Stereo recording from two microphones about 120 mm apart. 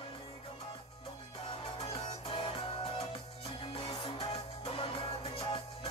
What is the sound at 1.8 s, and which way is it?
Music, 50° left (ahead or behind).